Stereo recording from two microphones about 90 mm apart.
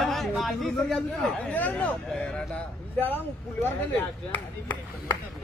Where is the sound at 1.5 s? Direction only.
15° left (ahead or behind).